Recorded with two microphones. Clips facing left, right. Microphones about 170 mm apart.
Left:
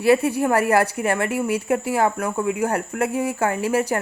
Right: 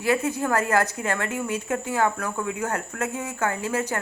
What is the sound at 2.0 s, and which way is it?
Speech, 30° left (ahead or behind).